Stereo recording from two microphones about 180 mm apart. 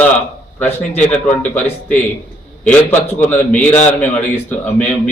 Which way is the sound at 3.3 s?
10° left (ahead or behind).